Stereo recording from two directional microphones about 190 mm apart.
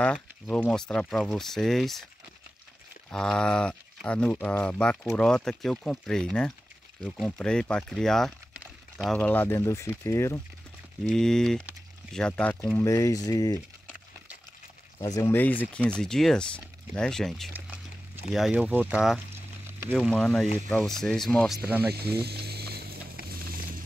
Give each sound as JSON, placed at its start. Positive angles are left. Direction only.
{"t": 0.0, "sound": "speech", "side_deg": 5}
{"t": 3.1, "sound": "speech", "side_deg": 5}
{"t": 11.1, "sound": "speech", "side_deg": 5}
{"t": 15.1, "sound": "speech", "side_deg": 10}
{"t": 17.5, "sound": "a sound", "side_deg": -10}
{"t": 18.3, "sound": "speech", "side_deg": 0}
{"t": 19.3, "sound": "a sound", "side_deg": -15}
{"t": 20.0, "sound": "speech", "side_deg": 5}
{"t": 21.6, "sound": "speech", "side_deg": -10}
{"t": 22.1, "sound": "a sound", "side_deg": -55}